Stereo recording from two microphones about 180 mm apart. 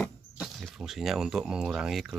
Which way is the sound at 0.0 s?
Centre (ahead or behind).